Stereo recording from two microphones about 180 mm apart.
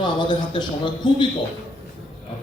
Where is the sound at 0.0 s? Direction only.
25° left (ahead or behind).